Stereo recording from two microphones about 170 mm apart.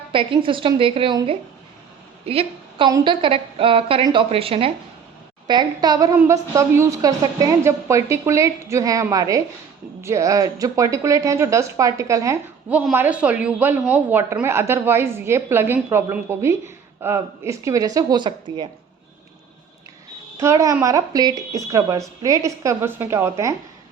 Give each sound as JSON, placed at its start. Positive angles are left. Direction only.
{"t": 0.1, "sound": "a woman's voice", "side_deg": -30}
{"t": 20.4, "sound": "a woman's voice", "side_deg": -20}